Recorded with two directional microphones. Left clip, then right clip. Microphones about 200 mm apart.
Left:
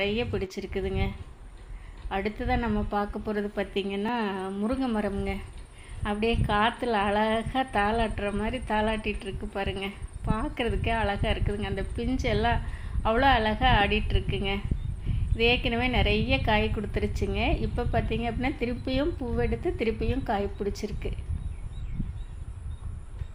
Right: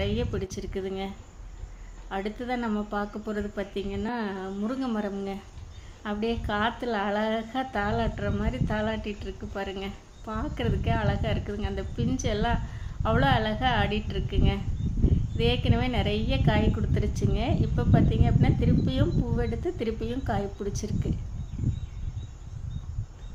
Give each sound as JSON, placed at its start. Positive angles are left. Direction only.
{"t": 0.0, "sound": "a woman's voice", "side_deg": -10}